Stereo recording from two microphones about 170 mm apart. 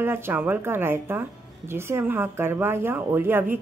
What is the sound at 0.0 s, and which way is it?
Speech, 15° right (ahead or behind).